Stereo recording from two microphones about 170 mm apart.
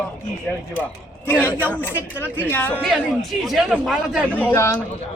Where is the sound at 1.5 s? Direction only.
10° left (ahead or behind).